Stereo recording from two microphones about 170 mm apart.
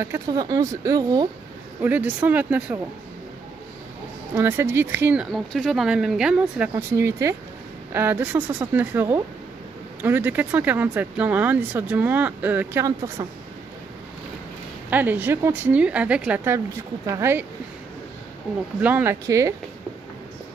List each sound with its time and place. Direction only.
0.0 s speech: 20° right (ahead or behind)
1.8 s speech: 10° right (ahead or behind)
4.4 s speech: 15° right (ahead or behind)
5.3 s speech: centre (ahead or behind)
6.7 s speech: 15° right (ahead or behind)
14.9 s speech: 10° right (ahead or behind)
18.8 s speech: 10° right (ahead or behind)